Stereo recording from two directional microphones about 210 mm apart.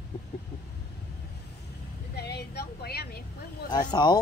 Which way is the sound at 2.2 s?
50° left (ahead or behind).